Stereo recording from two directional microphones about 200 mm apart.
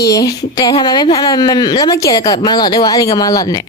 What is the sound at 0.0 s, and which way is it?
A woman's voice, 15° left (ahead or behind).